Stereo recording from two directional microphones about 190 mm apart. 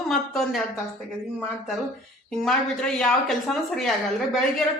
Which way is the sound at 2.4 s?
5° left (ahead or behind).